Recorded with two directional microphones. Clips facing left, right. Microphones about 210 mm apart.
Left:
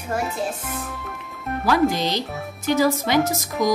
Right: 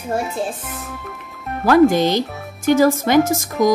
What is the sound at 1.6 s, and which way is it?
Speech, 55° right (ahead or behind).